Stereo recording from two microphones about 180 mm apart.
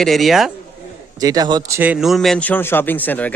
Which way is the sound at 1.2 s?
20° right (ahead or behind).